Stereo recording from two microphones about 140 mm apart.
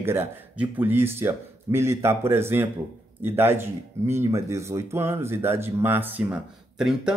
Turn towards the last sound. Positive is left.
turn(degrees=-5)  # may be behind; listen again after turning